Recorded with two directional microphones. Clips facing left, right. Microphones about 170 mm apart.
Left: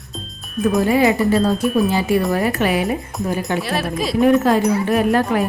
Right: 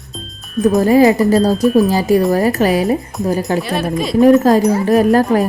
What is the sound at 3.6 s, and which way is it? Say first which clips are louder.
Speech: right 4 dB; centre (ahead or behind).